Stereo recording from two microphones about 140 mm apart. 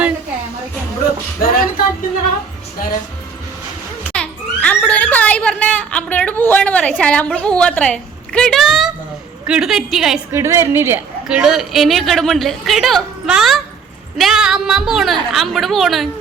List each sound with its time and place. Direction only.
1.4 s a sound: 90° left
4.1 s a child's voice: 10° left (ahead or behind)
10.3 s a woman's voice: 20° right (ahead or behind)
11.3 s a woman's voice: 5° right (ahead or behind)